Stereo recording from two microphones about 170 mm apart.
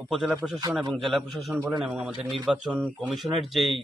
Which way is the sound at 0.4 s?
5° right (ahead or behind).